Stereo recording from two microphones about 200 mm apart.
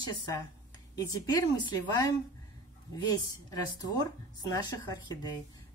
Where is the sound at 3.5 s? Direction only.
20° left (ahead or behind).